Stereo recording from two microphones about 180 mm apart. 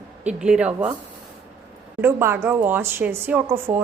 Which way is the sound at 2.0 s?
15° right (ahead or behind).